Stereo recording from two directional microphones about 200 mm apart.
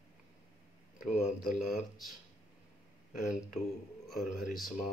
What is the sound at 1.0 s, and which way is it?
Speech, 40° left (ahead or behind).